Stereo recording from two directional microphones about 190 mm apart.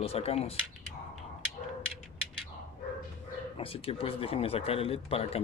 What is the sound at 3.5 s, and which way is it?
Speech, 30° left (ahead or behind).